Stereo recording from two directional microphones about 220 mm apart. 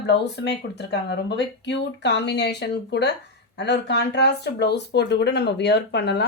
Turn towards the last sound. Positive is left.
turn(degrees=50)  # may be behind; listen again after turning